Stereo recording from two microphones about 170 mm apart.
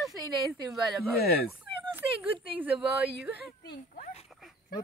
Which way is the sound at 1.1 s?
65° left (ahead or behind).